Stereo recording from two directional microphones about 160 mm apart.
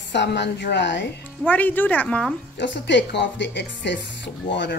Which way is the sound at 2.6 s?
90° left.